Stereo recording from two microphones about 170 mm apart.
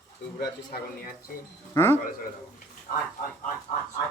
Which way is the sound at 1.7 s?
15° left (ahead or behind).